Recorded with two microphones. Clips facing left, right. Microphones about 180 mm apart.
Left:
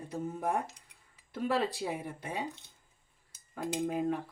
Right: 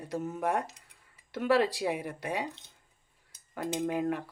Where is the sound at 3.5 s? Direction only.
80° right.